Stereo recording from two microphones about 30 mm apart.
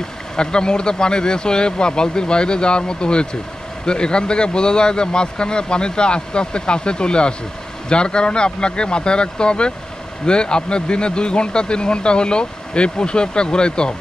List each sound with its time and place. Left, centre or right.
0.4 s speech: left